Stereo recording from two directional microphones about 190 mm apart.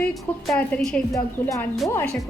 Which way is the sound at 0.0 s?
5° left (ahead or behind).